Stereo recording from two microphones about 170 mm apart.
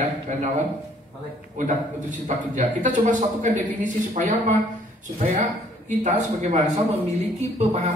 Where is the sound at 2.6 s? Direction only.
50° right (ahead or behind).